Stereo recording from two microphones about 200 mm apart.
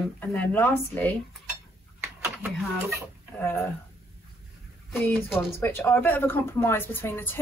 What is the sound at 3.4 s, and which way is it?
Speech, 10° left (ahead or behind).